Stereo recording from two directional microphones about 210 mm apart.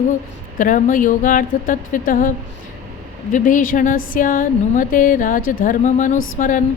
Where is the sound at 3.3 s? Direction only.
40° left (ahead or behind).